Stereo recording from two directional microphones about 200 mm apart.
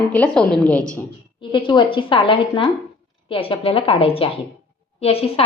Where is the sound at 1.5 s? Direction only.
25° left (ahead or behind).